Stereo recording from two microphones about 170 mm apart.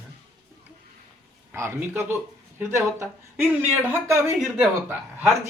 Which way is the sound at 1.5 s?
15° right (ahead or behind).